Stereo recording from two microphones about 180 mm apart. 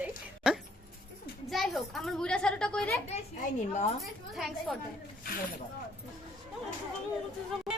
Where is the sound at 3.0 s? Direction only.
40° left (ahead or behind).